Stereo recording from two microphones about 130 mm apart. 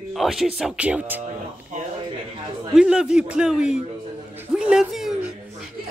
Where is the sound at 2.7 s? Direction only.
5° right (ahead or behind).